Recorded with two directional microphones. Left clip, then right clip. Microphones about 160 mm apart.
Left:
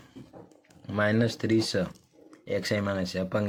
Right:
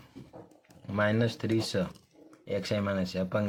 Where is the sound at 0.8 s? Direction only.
15° left (ahead or behind).